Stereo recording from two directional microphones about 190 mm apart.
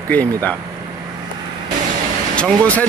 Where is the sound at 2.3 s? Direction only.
5° left (ahead or behind).